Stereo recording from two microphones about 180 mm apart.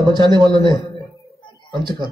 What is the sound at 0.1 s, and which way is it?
Speech, 25° right (ahead or behind).